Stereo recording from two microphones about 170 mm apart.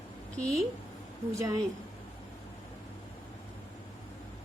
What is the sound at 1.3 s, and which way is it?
Speech, 20° right (ahead or behind).